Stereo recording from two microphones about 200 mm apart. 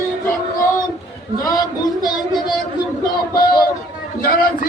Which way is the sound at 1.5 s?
20° left (ahead or behind).